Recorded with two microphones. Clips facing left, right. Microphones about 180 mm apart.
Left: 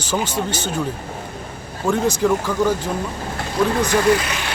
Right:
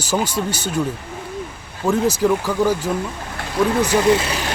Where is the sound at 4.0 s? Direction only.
25° right (ahead or behind).